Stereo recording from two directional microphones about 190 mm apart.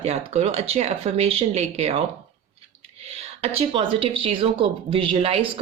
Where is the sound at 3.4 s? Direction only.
30° right (ahead or behind).